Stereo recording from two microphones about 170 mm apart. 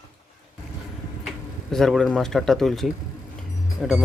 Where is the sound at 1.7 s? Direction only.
Centre (ahead or behind).